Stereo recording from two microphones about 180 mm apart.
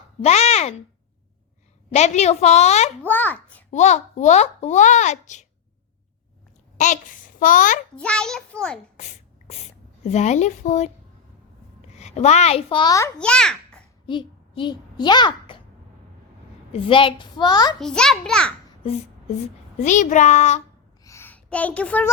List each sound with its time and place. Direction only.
0.3 s a child's voice: 35° left (ahead or behind)
1.9 s a child's voice: 40° left (ahead or behind)
3.1 s a child's voice: 10° left (ahead or behind)
3.7 s a child's voice: 40° left (ahead or behind)
6.7 s a child's voice: 45° left (ahead or behind)
7.9 s a child's voice: 5° left (ahead or behind)
10.0 s a child's voice: 40° left (ahead or behind)
11.9 s a child's voice: 40° left (ahead or behind); by 13.1 s 20° left (ahead or behind)
13.1 s a child's voice: 5° left (ahead or behind)
14.1 s a child's voice: 25° left (ahead or behind)
16.7 s a child's voice: 30° left (ahead or behind)
17.7 s a child's voice: 5° left (ahead or behind)
19.8 s a child's voice: 45° left (ahead or behind)
21.0 s a sound: 15° left (ahead or behind)